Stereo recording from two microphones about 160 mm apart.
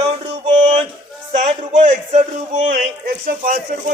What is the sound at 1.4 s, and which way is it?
Speech, 50° right (ahead or behind).